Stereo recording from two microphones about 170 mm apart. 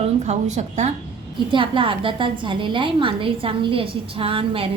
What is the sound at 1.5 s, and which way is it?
A woman's voice, 30° right (ahead or behind).